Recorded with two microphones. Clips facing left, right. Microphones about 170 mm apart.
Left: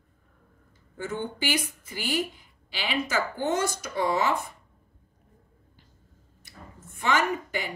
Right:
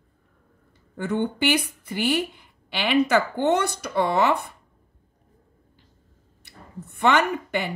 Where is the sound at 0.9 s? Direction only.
65° right (ahead or behind).